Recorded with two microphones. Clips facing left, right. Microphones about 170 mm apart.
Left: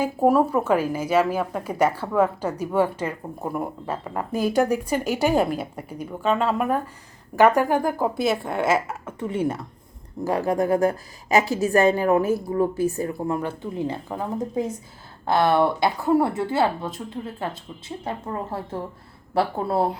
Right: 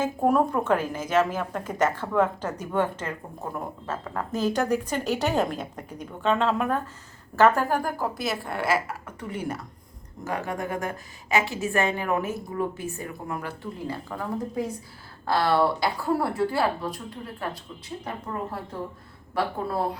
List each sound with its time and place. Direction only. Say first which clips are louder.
0.0 s a woman's voice: left 3 dB; 5° left (ahead or behind); by 18.1 s 25° left (ahead or behind)
19.3 s speech: left 5 dB; 30° left (ahead or behind)